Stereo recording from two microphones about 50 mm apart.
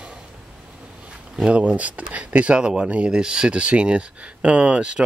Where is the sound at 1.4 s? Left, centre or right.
Right.